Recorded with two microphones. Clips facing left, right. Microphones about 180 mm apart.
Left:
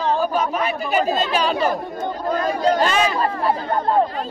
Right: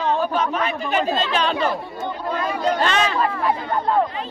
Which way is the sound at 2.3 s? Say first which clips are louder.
Left 3 dB; 40° left (ahead or behind).